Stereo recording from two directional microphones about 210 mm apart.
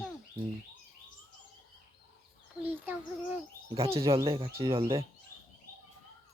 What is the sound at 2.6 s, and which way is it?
Speech, 10° right (ahead or behind).